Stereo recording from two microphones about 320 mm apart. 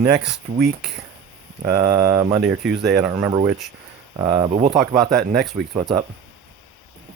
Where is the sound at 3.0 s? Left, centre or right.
Centre.